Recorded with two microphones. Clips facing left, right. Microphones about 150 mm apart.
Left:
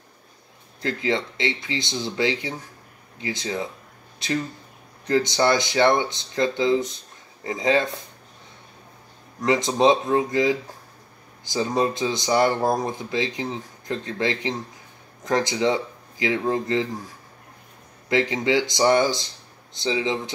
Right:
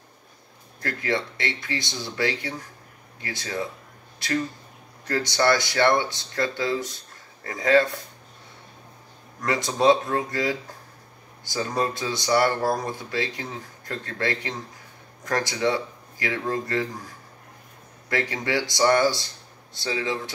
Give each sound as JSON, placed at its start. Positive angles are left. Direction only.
{"t": 0.7, "sound": "speech", "side_deg": 20}
{"t": 9.4, "sound": "speech", "side_deg": 20}
{"t": 18.0, "sound": "speech", "side_deg": 20}